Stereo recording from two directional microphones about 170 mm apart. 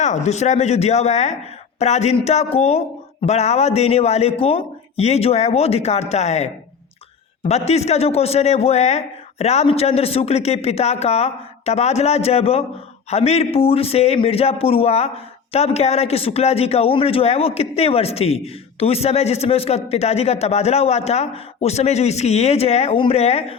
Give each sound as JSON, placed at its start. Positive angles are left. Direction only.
{"t": 0.0, "sound": "speech", "side_deg": 45}